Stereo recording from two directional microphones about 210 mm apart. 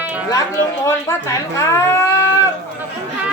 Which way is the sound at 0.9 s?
15° left (ahead or behind).